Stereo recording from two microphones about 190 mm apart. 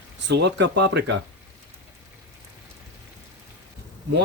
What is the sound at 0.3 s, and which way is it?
Speech, 65° right (ahead or behind).